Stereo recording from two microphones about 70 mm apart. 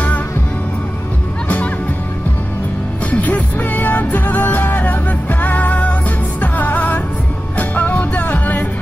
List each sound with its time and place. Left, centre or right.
3.1 s music: left